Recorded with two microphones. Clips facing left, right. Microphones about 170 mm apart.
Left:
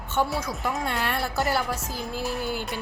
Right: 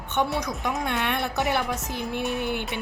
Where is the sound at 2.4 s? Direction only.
65° right (ahead or behind).